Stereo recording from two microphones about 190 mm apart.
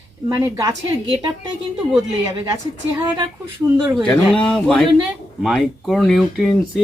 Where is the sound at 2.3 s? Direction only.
15° right (ahead or behind).